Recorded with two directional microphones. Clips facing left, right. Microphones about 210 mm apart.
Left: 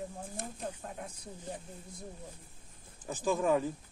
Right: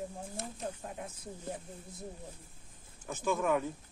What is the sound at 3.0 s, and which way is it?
Speech, 35° left (ahead or behind).